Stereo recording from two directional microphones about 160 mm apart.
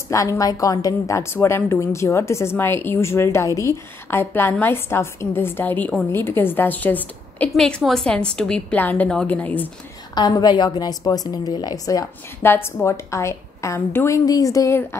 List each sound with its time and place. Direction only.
0.1 s a woman's voice: 20° left (ahead or behind)
10.1 s a woman's voice: 25° left (ahead or behind)